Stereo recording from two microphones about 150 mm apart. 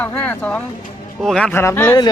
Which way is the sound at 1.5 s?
15° left (ahead or behind).